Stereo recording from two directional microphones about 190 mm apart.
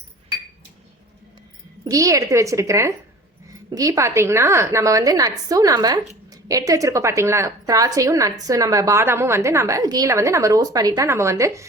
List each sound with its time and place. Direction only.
1.8 s a woman's voice: 15° right (ahead or behind)